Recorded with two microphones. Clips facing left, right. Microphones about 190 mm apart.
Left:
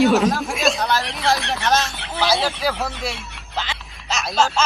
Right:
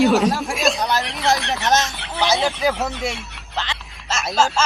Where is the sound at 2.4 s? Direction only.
Centre (ahead or behind).